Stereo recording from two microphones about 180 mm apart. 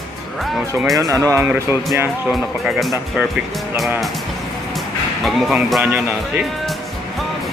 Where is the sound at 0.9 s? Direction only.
20° right (ahead or behind).